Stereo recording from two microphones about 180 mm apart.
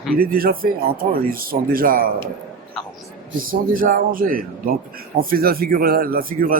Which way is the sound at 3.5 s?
50° right (ahead or behind).